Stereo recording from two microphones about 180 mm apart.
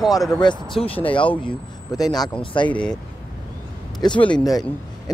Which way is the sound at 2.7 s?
5° left (ahead or behind).